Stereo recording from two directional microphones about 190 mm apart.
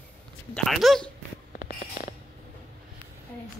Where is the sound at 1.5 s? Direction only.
45° left (ahead or behind).